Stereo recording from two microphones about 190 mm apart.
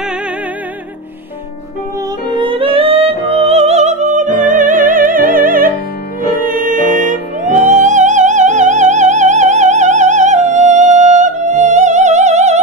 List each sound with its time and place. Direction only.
2.2 s music: 25° right (ahead or behind)